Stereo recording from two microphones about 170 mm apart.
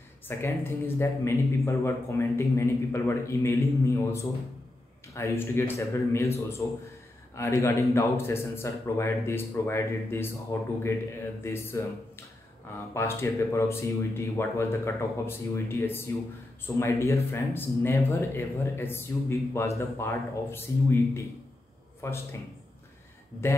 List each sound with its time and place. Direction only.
0.3 s speech: 15° left (ahead or behind)
11.4 s speech: 15° left (ahead or behind)